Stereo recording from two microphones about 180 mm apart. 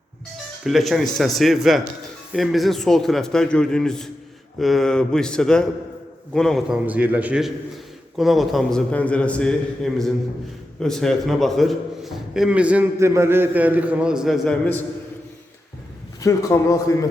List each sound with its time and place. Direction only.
0.6 s a man's voice: centre (ahead or behind)
6.8 s a man's voice: 10° right (ahead or behind)
16.2 s a man's voice: 20° left (ahead or behind)